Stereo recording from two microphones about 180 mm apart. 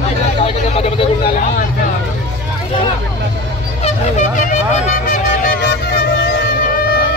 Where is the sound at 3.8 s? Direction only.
45° left (ahead or behind).